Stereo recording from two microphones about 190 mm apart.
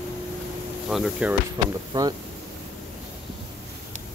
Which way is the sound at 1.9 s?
20° right (ahead or behind).